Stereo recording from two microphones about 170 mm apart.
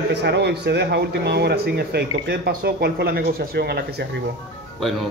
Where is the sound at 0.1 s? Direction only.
90° right.